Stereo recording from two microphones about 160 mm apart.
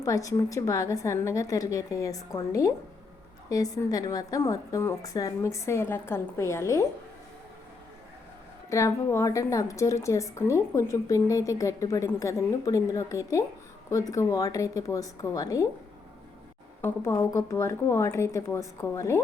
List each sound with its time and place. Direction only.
0.0 s a woman's voice: 20° left (ahead or behind)
8.7 s a woman's voice: 20° left (ahead or behind)
17.2 s a woman's voice: 20° left (ahead or behind)